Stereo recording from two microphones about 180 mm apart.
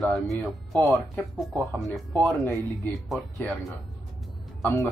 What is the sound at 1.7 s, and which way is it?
Speech, centre (ahead or behind).